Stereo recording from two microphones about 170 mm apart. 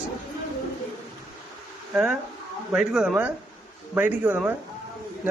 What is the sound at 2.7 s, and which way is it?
Speech, 5° right (ahead or behind).